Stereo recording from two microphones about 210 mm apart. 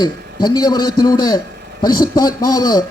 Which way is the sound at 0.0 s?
20° left (ahead or behind).